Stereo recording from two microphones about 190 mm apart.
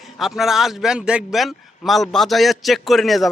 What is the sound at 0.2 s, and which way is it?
A man's voice, centre (ahead or behind).